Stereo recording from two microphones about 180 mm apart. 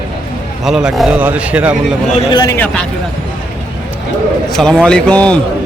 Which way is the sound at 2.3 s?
20° left (ahead or behind).